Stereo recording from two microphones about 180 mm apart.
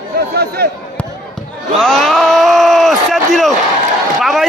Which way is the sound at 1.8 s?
Centre (ahead or behind).